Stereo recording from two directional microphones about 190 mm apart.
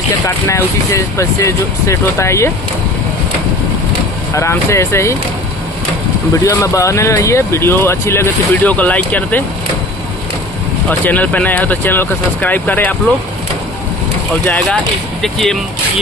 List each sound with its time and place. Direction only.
0.5 s speech: 15° left (ahead or behind)
4.4 s speech: 15° left (ahead or behind)
6.4 s speech: 15° left (ahead or behind)
10.9 s speech: 10° left (ahead or behind)
14.4 s speech: 5° left (ahead or behind)